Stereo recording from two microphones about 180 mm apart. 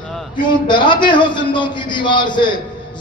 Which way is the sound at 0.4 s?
25° left (ahead or behind).